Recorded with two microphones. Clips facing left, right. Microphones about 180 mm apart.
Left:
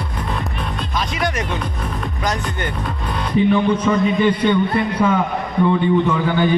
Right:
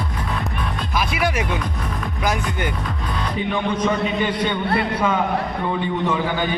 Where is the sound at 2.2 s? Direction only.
10° right (ahead or behind).